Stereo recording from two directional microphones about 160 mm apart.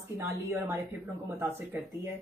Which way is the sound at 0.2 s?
15° right (ahead or behind).